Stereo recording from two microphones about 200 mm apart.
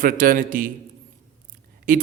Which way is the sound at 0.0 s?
45° right (ahead or behind).